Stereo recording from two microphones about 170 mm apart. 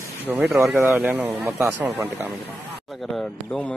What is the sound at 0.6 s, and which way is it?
Speech, 15° right (ahead or behind).